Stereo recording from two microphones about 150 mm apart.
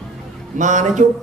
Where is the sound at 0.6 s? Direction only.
55° right (ahead or behind).